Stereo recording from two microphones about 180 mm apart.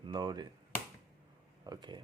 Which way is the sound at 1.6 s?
25° right (ahead or behind).